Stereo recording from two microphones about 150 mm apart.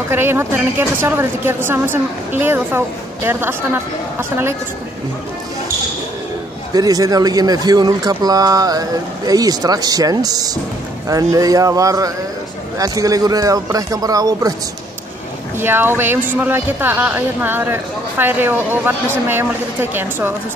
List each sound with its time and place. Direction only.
0.1 s speech: 15° right (ahead or behind)
6.7 s speech: 25° right (ahead or behind)
15.5 s speech: 15° right (ahead or behind)